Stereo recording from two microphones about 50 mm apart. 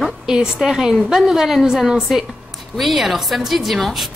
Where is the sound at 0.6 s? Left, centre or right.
Centre.